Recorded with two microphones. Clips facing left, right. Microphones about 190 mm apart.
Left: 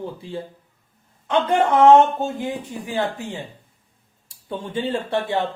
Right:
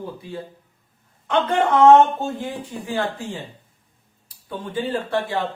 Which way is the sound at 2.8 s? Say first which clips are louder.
Even; 15° left (ahead or behind).